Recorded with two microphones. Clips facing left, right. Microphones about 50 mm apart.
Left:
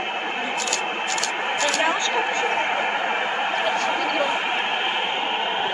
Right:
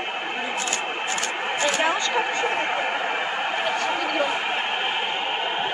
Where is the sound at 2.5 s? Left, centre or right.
Centre.